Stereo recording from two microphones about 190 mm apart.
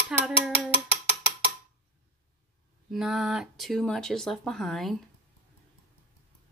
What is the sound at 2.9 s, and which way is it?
Speech, centre (ahead or behind).